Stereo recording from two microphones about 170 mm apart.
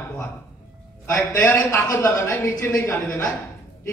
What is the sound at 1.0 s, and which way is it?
A man's voice, 15° left (ahead or behind).